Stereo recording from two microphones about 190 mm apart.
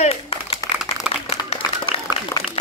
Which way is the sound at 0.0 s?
30° left (ahead or behind).